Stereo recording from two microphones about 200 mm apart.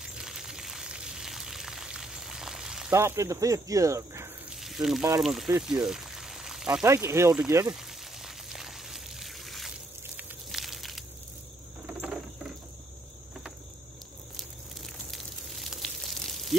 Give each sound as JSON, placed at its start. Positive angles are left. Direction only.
{"t": 0.0, "sound": "a sound", "side_deg": -5}
{"t": 2.9, "sound": "speech", "side_deg": -15}
{"t": 4.6, "sound": "water", "side_deg": 0}
{"t": 5.2, "sound": "speech", "side_deg": 0}
{"t": 5.6, "sound": "pour", "side_deg": -5}
{"t": 6.8, "sound": "speech", "side_deg": -15}
{"t": 7.7, "sound": "pour", "side_deg": 0}
{"t": 10.1, "sound": "a sound", "side_deg": 0}
{"t": 14.3, "sound": "a sound", "side_deg": 0}